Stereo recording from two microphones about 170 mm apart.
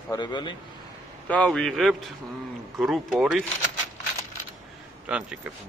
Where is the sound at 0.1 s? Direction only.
25° left (ahead or behind).